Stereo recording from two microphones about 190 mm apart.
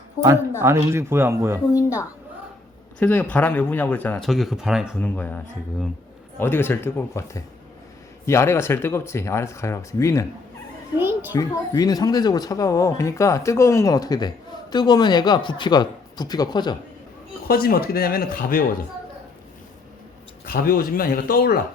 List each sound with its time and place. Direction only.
0.6 s speech: 15° right (ahead or behind)
1.7 s speech: 15° left (ahead or behind); by 4.9 s 5° right (ahead or behind)
4.9 s speech: 10° left (ahead or behind)
6.4 s speech: 10° left (ahead or behind)
11.3 s a man's voice: 20° left (ahead or behind)
17.5 s speech: 50° left (ahead or behind)
20.4 s speech: 50° left (ahead or behind)